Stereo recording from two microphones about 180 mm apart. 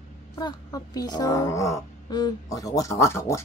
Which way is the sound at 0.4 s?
20° left (ahead or behind).